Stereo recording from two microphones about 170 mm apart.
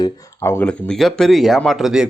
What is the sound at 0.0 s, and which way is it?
Speech, 20° left (ahead or behind).